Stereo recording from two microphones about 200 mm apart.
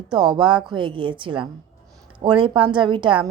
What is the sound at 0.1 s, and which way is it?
A woman's voice, 20° right (ahead or behind).